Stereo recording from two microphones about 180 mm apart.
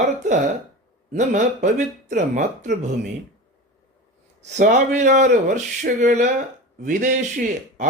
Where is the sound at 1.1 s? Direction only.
45° right (ahead or behind).